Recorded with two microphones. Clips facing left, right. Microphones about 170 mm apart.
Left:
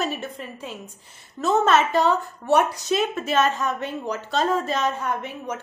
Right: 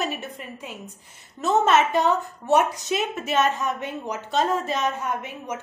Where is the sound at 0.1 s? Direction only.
15° right (ahead or behind).